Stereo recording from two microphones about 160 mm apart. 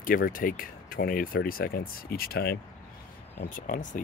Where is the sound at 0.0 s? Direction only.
60° left (ahead or behind); by 2.6 s 75° left (ahead or behind).